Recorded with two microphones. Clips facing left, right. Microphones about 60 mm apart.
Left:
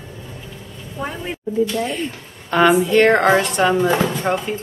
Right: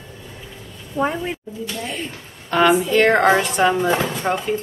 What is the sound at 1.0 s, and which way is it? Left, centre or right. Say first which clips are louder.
Speech: right 7 dB; right.